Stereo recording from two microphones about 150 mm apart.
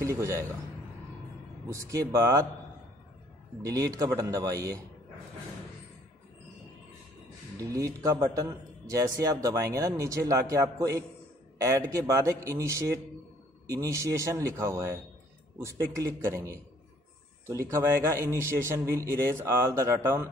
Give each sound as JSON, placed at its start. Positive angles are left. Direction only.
{"t": 0.0, "sound": "a man's voice", "side_deg": -20}
{"t": 1.7, "sound": "speech", "side_deg": -20}
{"t": 3.6, "sound": "speech", "side_deg": -25}
{"t": 7.5, "sound": "a man's voice", "side_deg": -20}